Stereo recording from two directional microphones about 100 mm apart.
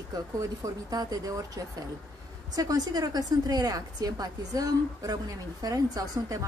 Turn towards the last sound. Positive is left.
turn(degrees=-40)  # may be behind; listen again after turning